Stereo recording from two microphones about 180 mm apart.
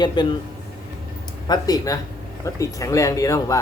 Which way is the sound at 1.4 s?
20° left (ahead or behind).